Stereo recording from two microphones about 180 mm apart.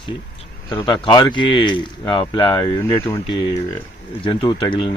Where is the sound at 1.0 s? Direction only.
25° left (ahead or behind).